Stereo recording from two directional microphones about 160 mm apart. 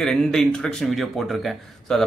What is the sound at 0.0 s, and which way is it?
Speech, 5° left (ahead or behind).